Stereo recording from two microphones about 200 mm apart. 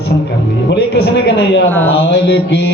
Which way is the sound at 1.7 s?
10° left (ahead or behind).